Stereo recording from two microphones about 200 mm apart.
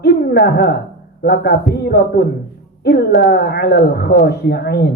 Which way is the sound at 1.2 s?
50° left (ahead or behind).